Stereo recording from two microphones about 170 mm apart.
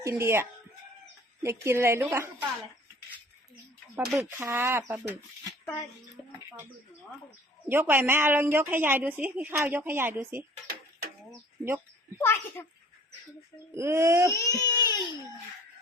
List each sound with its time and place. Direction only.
0.0 s a woman's voice: 15° right (ahead or behind)
4.1 s a woman's voice: 10° right (ahead or behind)
7.7 s a woman's voice: 10° right (ahead or behind)
12.2 s a child's voice: 15° left (ahead or behind)
13.7 s a woman's voice: 15° right (ahead or behind)
14.3 s baby cry: 20° left (ahead or behind)